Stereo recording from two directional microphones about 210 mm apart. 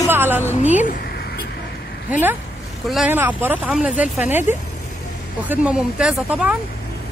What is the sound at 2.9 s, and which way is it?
Speech, 5° right (ahead or behind).